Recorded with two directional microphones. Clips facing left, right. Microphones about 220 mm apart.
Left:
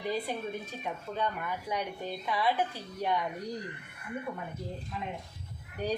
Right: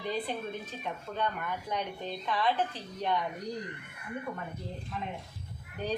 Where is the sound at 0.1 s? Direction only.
10° left (ahead or behind).